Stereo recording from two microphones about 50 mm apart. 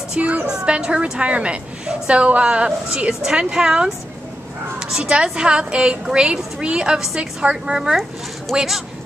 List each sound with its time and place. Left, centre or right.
0.2 s a woman's voice: right
0.5 s a woman's voice: centre